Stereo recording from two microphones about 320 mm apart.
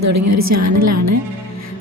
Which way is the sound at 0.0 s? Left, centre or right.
Right.